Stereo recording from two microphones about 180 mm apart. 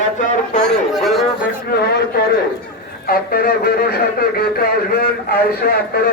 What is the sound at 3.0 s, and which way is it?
A man's voice, 55° left (ahead or behind).